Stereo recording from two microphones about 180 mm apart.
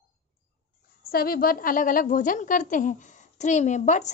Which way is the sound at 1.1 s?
55° left (ahead or behind).